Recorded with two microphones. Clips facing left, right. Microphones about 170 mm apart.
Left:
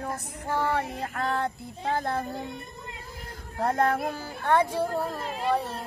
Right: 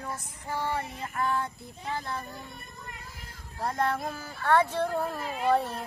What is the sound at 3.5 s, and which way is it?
Child singing, 60° left (ahead or behind).